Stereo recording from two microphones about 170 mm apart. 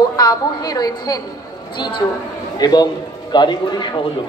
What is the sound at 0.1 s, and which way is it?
A man's voice, 25° left (ahead or behind).